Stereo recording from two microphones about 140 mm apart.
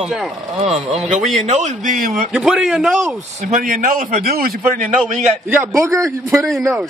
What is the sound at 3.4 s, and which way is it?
A man's voice, 70° right (ahead or behind).